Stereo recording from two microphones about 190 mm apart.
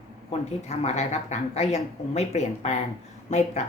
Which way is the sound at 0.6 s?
35° left (ahead or behind).